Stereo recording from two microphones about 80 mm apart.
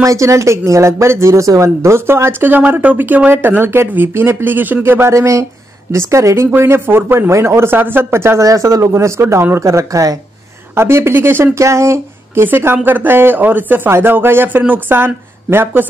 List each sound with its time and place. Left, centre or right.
0.0 s speech: right
8.5 s speech: right
12.4 s speech: right